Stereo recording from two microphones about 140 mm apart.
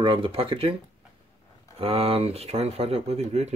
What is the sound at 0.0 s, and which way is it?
Speech, 40° right (ahead or behind).